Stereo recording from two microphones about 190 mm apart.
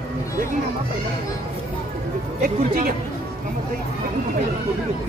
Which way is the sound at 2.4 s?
50° right (ahead or behind).